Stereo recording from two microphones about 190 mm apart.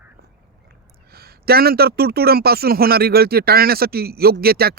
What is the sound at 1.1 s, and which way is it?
A man's voice, 55° right (ahead or behind).